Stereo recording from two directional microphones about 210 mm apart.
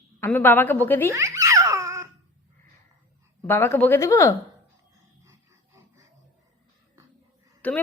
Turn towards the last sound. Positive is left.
turn(degrees=5)  # may be behind; listen again after turning